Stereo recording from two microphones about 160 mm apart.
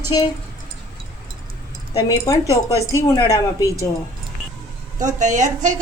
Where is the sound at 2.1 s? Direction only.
20° left (ahead or behind).